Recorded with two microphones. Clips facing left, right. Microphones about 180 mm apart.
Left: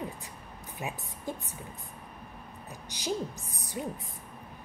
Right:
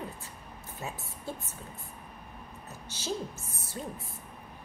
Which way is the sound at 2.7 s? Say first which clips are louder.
Left 2 dB; 15° left (ahead or behind).